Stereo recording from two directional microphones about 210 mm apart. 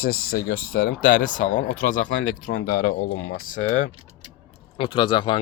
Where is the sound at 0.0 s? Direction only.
45° left (ahead or behind).